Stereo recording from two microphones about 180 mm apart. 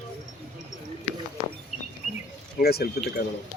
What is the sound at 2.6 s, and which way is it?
Speech, 60° left (ahead or behind).